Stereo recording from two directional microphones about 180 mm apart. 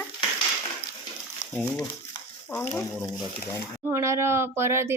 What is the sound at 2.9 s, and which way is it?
Speech, 20° left (ahead or behind).